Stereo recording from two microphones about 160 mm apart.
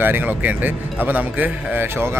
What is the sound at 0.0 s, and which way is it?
A man's voice, 10° right (ahead or behind).